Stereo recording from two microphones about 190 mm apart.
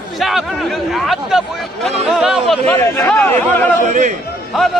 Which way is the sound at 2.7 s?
10° left (ahead or behind).